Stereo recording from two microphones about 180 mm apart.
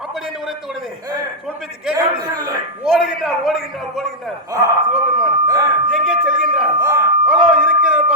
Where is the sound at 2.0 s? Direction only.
20° right (ahead or behind).